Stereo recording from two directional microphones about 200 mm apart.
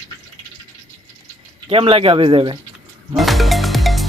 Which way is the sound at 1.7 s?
30° right (ahead or behind).